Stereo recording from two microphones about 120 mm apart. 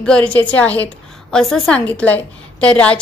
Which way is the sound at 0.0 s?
10° left (ahead or behind).